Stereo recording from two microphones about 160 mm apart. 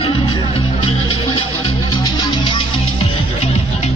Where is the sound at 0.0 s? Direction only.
35° left (ahead or behind).